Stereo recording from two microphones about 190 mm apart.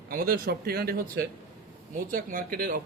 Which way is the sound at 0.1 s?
50° right (ahead or behind).